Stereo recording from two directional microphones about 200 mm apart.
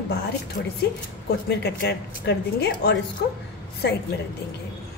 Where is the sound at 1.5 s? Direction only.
55° left (ahead or behind).